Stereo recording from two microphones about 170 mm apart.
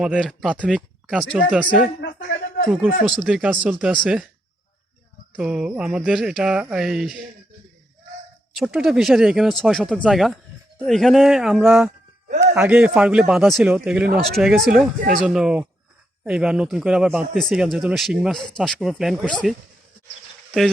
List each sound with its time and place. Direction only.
0.0 s speech: centre (ahead or behind)
2.0 s a sound: 85° left
2.6 s speech: 5° right (ahead or behind)
5.4 s speech: 5° right (ahead or behind)
8.5 s speech: centre (ahead or behind)